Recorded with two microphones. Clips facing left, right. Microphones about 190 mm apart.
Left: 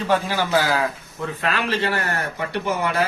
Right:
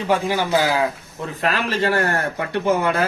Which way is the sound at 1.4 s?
35° right (ahead or behind).